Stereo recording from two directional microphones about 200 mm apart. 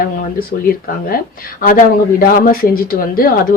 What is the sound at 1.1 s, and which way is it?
A woman's voice, 45° left (ahead or behind).